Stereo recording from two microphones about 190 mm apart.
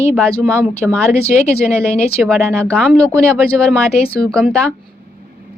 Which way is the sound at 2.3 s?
5° left (ahead or behind).